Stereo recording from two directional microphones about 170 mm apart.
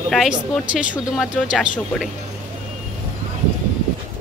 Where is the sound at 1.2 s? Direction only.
5° right (ahead or behind).